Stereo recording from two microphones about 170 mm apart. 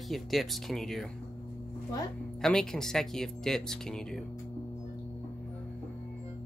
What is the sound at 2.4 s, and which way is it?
Speech, 5° left (ahead or behind).